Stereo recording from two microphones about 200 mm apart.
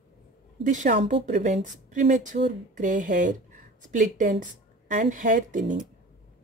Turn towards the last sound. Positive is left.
turn(degrees=-40)  # may be behind; listen again after turning